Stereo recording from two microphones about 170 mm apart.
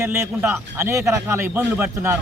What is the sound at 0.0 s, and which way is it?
Speech, 15° right (ahead or behind).